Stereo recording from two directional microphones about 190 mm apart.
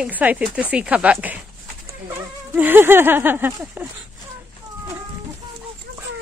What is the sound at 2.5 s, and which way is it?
Speech, 10° right (ahead or behind).